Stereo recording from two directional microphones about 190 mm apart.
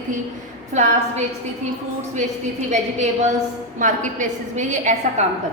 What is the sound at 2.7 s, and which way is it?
A woman's voice, 35° right (ahead or behind).